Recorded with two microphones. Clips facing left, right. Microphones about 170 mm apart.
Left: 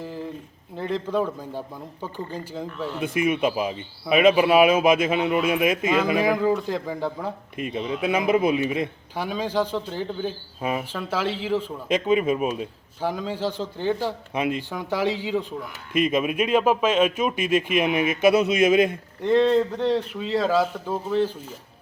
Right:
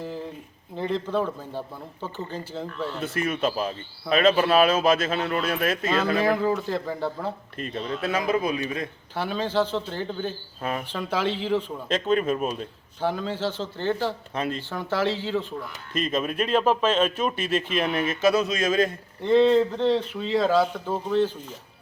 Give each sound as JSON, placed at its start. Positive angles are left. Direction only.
{"t": 0.8, "sound": "a man's voice", "side_deg": 10}
{"t": 19.4, "sound": "speech", "side_deg": 0}